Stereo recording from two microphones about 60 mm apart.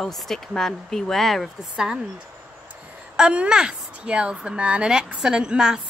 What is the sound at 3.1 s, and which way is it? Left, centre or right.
A woman's voice, centre.